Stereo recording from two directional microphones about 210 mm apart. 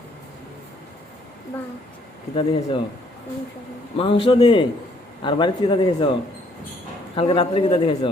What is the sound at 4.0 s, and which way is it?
A man's voice, 25° left (ahead or behind).